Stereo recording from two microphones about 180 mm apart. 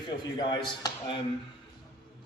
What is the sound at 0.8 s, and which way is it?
Speech, 25° left (ahead or behind).